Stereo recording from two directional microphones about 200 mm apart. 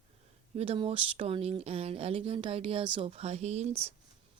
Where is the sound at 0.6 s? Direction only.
30° right (ahead or behind).